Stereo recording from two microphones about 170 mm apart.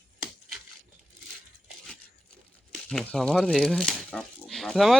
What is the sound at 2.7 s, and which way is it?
Speech, 5° left (ahead or behind).